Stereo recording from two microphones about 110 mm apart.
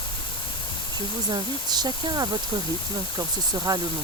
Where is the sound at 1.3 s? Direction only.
40° right (ahead or behind).